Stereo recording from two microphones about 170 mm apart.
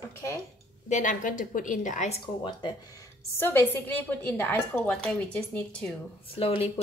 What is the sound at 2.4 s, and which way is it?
A woman's voice, 25° left (ahead or behind).